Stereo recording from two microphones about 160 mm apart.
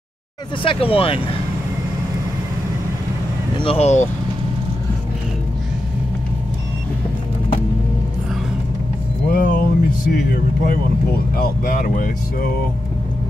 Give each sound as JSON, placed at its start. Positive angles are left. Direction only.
{"t": 0.7, "sound": "speech", "side_deg": 35}
{"t": 3.5, "sound": "speech", "side_deg": 35}
{"t": 9.3, "sound": "music", "side_deg": 60}
{"t": 10.3, "sound": "speech", "side_deg": 65}